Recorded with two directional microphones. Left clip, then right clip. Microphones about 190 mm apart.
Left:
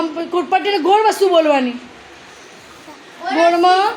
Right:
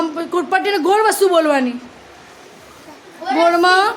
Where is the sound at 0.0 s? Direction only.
Centre (ahead or behind).